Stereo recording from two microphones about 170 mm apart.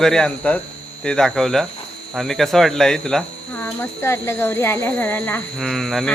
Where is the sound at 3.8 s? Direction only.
15° left (ahead or behind).